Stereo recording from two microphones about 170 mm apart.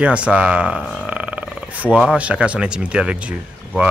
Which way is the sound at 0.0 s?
5° right (ahead or behind).